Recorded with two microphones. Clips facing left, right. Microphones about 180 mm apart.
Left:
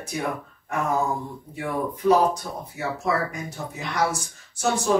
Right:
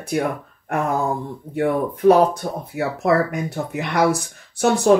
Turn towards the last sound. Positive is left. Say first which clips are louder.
# right 7 dB
turn(degrees=-60)  # may be behind; listen again after turning